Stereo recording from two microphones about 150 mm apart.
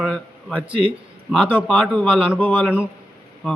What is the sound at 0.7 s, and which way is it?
Speech, 35° right (ahead or behind).